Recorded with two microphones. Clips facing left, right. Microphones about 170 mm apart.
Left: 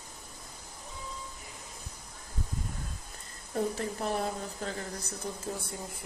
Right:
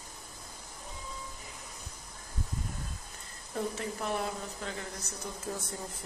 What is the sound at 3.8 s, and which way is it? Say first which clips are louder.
A woman's voice: left 2 dB; 35° left (ahead or behind).